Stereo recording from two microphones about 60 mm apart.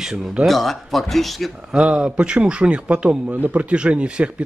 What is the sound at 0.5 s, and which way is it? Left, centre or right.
Speech, centre.